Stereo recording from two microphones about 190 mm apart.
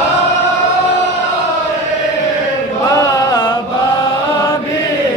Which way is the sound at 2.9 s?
20° left (ahead or behind).